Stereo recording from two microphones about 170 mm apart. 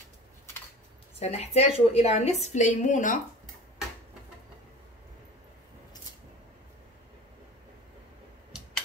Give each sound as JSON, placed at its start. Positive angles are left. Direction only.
{"t": 1.2, "sound": "a woman's voice", "side_deg": 40}